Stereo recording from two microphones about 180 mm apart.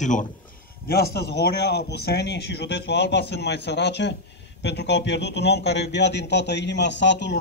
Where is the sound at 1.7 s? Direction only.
65° left (ahead or behind).